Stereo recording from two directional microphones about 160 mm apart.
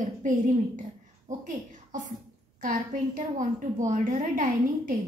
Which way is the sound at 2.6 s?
55° right (ahead or behind).